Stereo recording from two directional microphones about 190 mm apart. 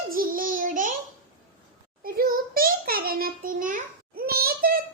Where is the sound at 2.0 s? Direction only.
50° right (ahead or behind).